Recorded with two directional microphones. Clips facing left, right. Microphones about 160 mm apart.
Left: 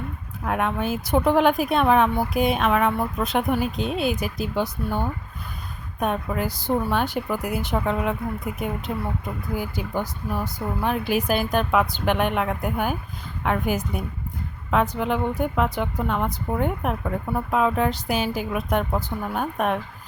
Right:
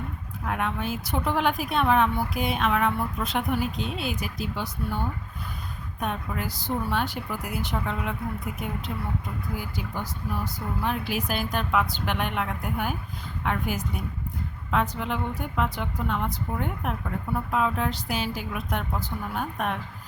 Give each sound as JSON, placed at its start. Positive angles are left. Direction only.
{"t": 0.4, "sound": "a woman's voice", "side_deg": 50}
{"t": 9.6, "sound": "a woman's voice", "side_deg": 50}